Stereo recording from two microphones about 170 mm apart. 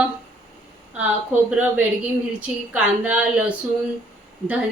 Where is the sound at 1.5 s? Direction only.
10° right (ahead or behind).